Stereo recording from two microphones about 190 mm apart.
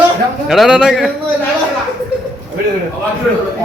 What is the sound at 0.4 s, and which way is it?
Speech, centre (ahead or behind).